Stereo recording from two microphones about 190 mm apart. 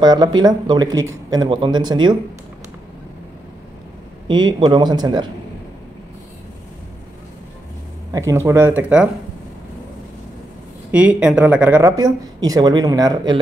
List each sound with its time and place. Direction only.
0.0 s speech: 20° right (ahead or behind)
4.3 s speech: 25° right (ahead or behind)
8.1 s speech: 15° right (ahead or behind)
10.9 s speech: 5° right (ahead or behind)